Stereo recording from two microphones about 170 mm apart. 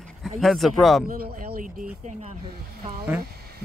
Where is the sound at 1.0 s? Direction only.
60° right (ahead or behind).